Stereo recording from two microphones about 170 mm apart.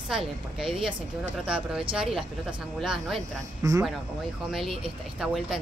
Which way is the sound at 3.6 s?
20° right (ahead or behind).